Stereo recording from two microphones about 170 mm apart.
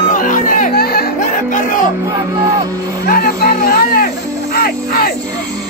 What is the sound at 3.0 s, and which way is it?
Music, 60° left (ahead or behind).